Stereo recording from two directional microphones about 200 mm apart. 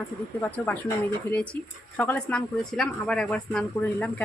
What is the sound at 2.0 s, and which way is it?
Speech, 5° left (ahead or behind).